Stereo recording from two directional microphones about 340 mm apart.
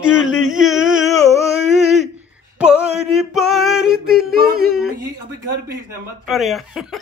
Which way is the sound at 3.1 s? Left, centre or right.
Centre.